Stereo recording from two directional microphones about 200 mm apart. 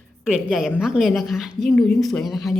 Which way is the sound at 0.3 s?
5° right (ahead or behind).